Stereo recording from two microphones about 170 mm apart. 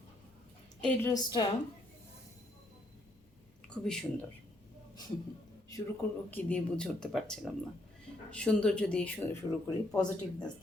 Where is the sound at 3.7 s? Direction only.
5° left (ahead or behind).